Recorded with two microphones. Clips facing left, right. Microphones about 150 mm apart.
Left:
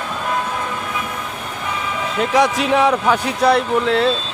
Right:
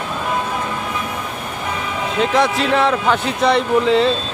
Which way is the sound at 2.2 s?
15° left (ahead or behind).